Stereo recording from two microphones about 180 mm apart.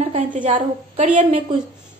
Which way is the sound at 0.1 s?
40° right (ahead or behind).